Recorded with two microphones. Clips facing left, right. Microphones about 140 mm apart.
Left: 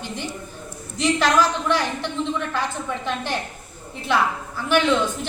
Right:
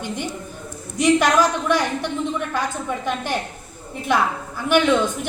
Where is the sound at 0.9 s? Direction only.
15° right (ahead or behind).